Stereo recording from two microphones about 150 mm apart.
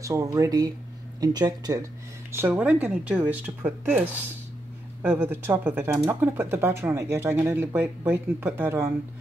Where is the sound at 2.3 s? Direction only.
10° right (ahead or behind).